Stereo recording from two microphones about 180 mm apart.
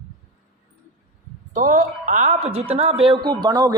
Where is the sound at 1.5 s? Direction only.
45° right (ahead or behind).